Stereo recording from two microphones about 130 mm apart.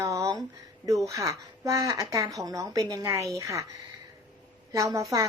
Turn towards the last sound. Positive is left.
turn(degrees=-25)  # may be behind; listen again after turning